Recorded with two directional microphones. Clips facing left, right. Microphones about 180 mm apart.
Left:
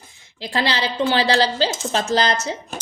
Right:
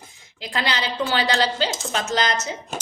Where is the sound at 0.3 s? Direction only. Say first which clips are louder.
Left 4 dB; 30° left (ahead or behind).